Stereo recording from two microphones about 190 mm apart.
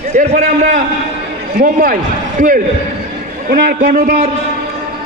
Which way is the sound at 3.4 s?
45° right (ahead or behind).